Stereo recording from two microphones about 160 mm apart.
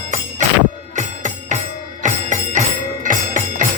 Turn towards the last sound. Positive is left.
turn(degrees=-55)  # may be behind; listen again after turning